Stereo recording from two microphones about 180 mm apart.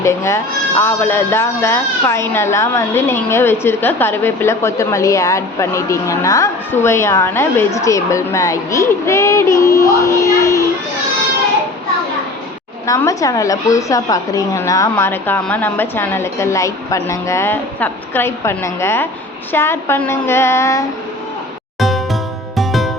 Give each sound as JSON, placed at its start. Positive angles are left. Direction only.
{"t": 0.0, "sound": "speech", "side_deg": 15}
{"t": 12.8, "sound": "speech", "side_deg": 15}
{"t": 21.8, "sound": "music", "side_deg": 0}